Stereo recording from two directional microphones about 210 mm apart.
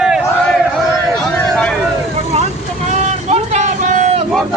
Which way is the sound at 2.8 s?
35° right (ahead or behind).